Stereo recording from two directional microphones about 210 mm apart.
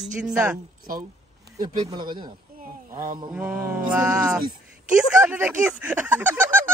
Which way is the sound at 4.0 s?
15° right (ahead or behind).